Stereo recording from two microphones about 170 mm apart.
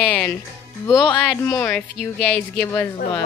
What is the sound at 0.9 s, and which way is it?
Speech, 25° left (ahead or behind).